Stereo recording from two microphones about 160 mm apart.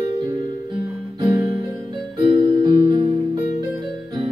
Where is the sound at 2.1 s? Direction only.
30° right (ahead or behind).